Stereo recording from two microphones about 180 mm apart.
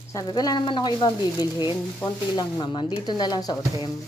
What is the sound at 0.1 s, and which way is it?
A woman's voice, 20° left (ahead or behind).